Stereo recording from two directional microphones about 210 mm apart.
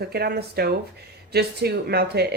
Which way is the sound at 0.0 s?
50° right (ahead or behind).